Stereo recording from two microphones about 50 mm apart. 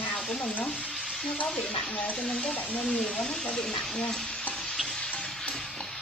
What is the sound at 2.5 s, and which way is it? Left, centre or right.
Frying, left.